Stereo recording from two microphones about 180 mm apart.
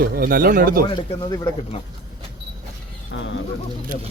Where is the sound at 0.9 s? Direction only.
25° left (ahead or behind).